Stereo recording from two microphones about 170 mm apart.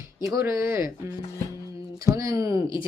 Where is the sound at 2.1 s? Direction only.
20° right (ahead or behind).